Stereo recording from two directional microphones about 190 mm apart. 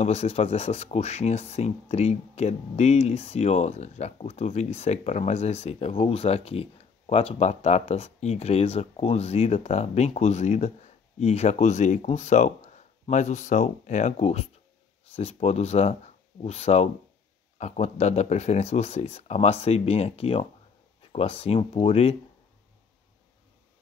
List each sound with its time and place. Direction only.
0.0 s speech: 35° left (ahead or behind)